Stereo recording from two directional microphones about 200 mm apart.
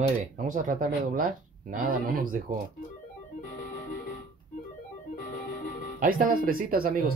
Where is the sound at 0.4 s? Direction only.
40° right (ahead or behind).